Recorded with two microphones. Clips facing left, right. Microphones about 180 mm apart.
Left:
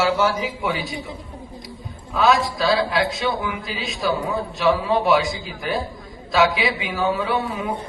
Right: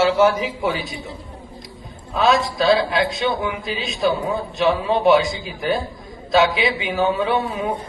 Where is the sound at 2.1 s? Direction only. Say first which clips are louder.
Right 1 dB; 20° right (ahead or behind).